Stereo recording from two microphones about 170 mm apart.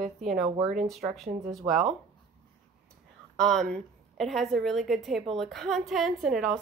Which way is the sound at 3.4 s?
Centre (ahead or behind).